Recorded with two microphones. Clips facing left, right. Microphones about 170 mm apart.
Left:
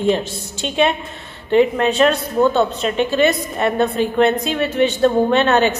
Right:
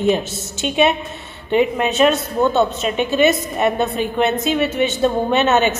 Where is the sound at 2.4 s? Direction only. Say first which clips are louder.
Left 2 dB; 20° right (ahead or behind).